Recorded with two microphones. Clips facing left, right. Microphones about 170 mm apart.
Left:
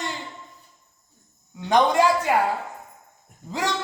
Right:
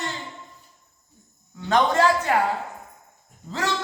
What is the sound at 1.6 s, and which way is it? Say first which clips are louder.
Speech: left 1 dB; 15° left (ahead or behind).